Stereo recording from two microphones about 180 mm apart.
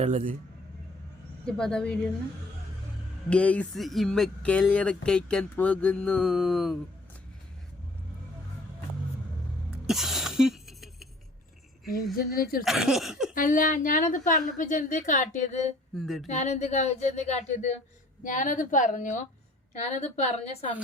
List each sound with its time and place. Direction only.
0.0 s speech: 40° right (ahead or behind)
1.5 s speech: 5° left (ahead or behind)
3.2 s speech: 5° left (ahead or behind)
9.7 s a sound: centre (ahead or behind)
12.1 s speech: 55° left (ahead or behind)
12.6 s speech: centre (ahead or behind)
13.3 s a woman's voice: 50° left (ahead or behind)
16.0 s speech: centre (ahead or behind)
16.2 s a woman's voice: 40° left (ahead or behind)